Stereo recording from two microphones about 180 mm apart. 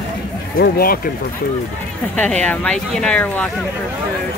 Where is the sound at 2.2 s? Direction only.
5° left (ahead or behind).